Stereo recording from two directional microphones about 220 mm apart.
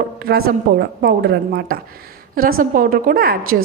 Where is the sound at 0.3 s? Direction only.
45° right (ahead or behind).